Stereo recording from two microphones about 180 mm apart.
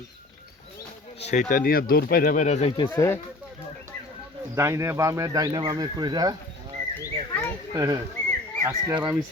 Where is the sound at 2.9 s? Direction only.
15° left (ahead or behind).